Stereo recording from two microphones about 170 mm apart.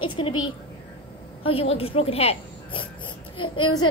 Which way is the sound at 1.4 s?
35° left (ahead or behind).